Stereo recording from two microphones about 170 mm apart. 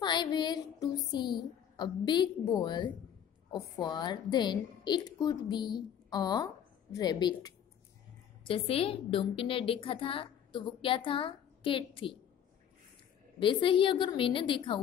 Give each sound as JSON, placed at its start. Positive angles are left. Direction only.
{"t": 0.0, "sound": "a sound", "side_deg": 25}
{"t": 3.5, "sound": "a woman's voice", "side_deg": 25}
{"t": 13.4, "sound": "a woman's voice", "side_deg": 30}